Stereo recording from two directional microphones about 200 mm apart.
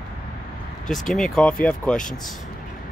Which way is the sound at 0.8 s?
Centre (ahead or behind).